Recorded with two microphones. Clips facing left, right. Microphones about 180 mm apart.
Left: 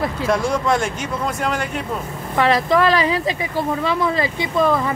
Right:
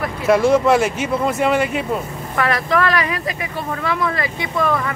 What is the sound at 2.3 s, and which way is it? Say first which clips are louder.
A woman's voice: left 3 dB; 25° left (ahead or behind).